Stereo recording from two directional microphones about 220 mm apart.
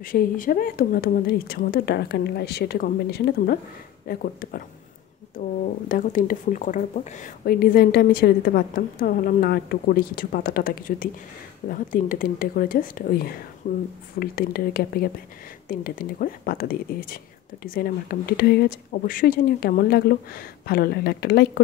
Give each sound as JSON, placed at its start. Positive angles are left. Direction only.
{"t": 0.0, "sound": "speech", "side_deg": 40}
{"t": 5.9, "sound": "speech", "side_deg": 40}